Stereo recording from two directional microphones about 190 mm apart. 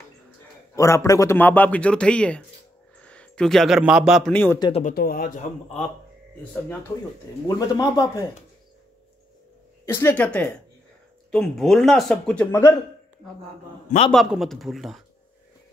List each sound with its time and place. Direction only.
0.7 s a man's voice: 15° left (ahead or behind)
4.6 s speech: 25° left (ahead or behind)
4.8 s speech: 50° left (ahead or behind)
7.4 s speech: 20° left (ahead or behind)
9.8 s a man's voice: 10° left (ahead or behind)
12.4 s a man's voice: 15° left (ahead or behind)
14.1 s speech: centre (ahead or behind)